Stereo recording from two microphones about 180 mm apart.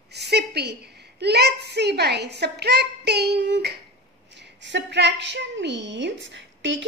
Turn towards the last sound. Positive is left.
turn(degrees=-90)